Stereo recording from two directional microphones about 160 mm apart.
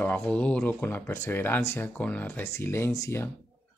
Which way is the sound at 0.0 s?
10° left (ahead or behind).